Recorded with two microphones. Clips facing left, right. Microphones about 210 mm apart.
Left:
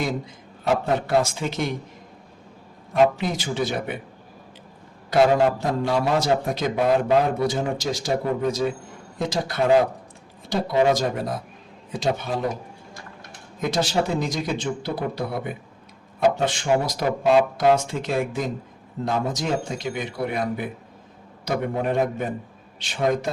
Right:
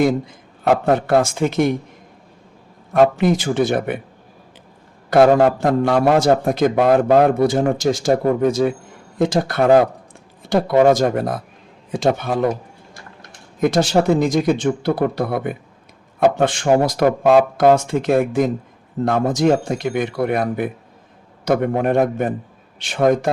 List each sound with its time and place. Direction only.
0.6 s speech: 55° right (ahead or behind)
2.9 s speech: 55° right (ahead or behind)
5.1 s speech: 55° right (ahead or behind)
6.7 s a man's voice: 70° right (ahead or behind)
7.1 s a man's voice: 50° right (ahead or behind)
13.6 s speech: 50° right (ahead or behind)